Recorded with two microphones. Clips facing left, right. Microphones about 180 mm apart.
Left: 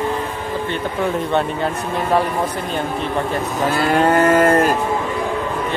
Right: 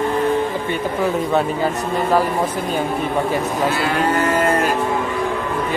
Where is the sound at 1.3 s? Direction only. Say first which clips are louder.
Right 1 dB; centre (ahead or behind).